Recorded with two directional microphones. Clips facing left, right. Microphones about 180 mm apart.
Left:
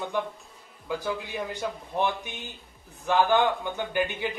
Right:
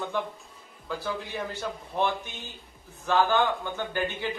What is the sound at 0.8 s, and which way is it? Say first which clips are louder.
A man's voice: left 2 dB; 15° left (ahead or behind).